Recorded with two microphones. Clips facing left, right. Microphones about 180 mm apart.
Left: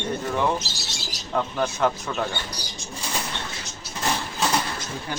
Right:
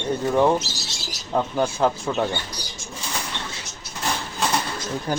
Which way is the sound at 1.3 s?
25° right (ahead or behind).